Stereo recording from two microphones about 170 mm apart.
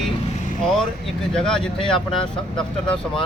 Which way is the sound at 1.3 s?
5° left (ahead or behind).